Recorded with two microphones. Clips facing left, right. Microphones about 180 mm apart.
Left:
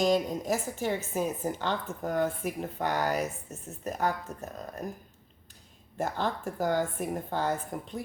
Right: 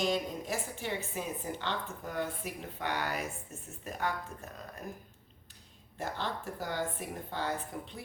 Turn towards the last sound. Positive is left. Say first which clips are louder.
# left 5 dB
turn(degrees=45)  # may be behind; listen again after turning